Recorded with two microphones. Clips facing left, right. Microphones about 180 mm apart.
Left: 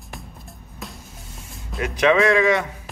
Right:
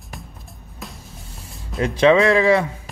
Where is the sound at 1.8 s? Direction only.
30° right (ahead or behind).